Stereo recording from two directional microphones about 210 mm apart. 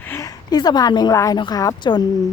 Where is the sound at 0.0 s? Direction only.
15° left (ahead or behind).